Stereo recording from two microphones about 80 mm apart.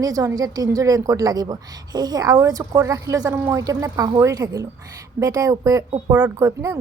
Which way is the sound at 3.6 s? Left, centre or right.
Right.